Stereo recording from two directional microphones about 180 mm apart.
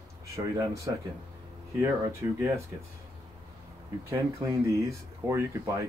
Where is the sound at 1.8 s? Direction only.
15° right (ahead or behind).